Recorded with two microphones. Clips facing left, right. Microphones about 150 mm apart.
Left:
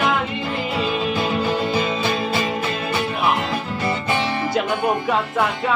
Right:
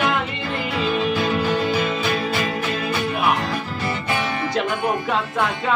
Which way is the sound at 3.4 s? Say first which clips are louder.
Left 2 dB; 25° left (ahead or behind).